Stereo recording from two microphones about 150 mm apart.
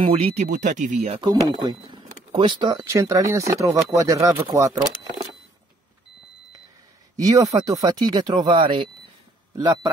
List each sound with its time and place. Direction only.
0.0 s speech: 40° right (ahead or behind)
1.5 s speech: 30° right (ahead or behind)
7.2 s speech: 25° right (ahead or behind)